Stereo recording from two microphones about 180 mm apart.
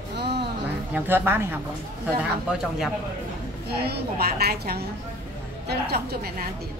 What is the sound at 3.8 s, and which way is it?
A woman's voice, 60° right (ahead or behind).